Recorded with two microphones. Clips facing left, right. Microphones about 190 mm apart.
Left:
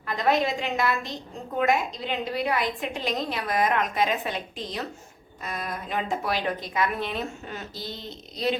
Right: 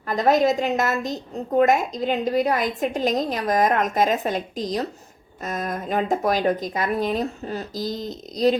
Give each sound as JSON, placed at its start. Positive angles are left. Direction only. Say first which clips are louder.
{"t": 0.1, "sound": "a woman's voice", "louder": "right 6 dB", "side_deg": -40}